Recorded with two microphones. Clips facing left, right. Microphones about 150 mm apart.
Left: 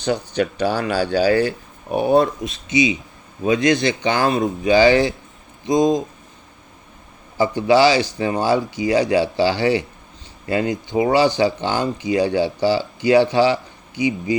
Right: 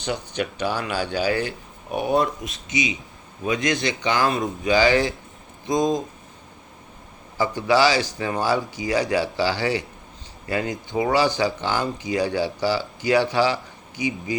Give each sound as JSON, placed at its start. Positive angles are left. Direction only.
{"t": 0.0, "sound": "speech", "side_deg": 35}
{"t": 7.3, "sound": "speech", "side_deg": 20}